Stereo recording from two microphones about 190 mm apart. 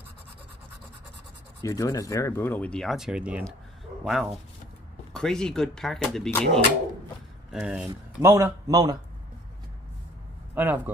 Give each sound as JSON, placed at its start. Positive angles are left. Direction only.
{"t": 1.6, "sound": "speech", "side_deg": 15}
{"t": 8.2, "sound": "a man's voice", "side_deg": -15}
{"t": 10.5, "sound": "speech", "side_deg": -10}